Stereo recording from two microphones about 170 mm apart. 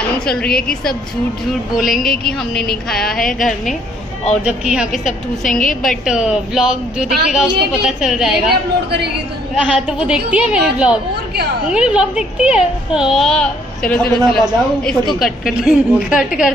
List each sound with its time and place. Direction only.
0.2 s a woman's voice: 5° left (ahead or behind)
4.5 s a woman's voice: 5° right (ahead or behind)
5.6 s a woman's voice: 50° left (ahead or behind)
5.9 s a woman's voice: 5° right (ahead or behind)
9.6 s a woman's voice: 5° right (ahead or behind)